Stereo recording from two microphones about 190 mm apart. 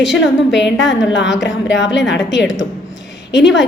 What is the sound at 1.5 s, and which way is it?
Speech, 70° left (ahead or behind).